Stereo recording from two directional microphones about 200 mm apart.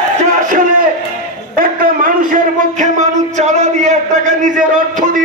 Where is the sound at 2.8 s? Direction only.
35° right (ahead or behind).